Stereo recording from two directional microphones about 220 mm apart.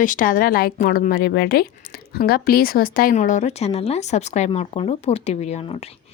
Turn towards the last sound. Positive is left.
turn(degrees=30)  # may be behind; listen again after turning